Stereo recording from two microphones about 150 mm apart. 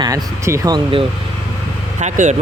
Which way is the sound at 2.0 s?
55° right (ahead or behind).